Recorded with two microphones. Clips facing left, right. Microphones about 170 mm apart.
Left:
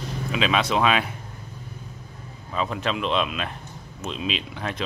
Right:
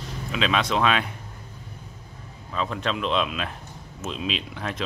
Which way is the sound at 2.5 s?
5° left (ahead or behind).